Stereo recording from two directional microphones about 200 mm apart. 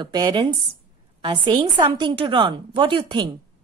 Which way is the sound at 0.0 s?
20° right (ahead or behind).